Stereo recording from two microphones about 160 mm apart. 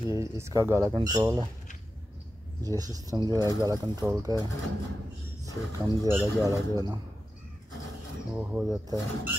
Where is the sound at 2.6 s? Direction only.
20° right (ahead or behind).